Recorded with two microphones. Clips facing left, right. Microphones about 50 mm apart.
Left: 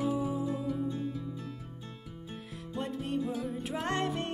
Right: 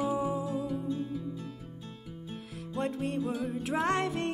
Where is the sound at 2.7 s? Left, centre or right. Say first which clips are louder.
Right 2 dB; right.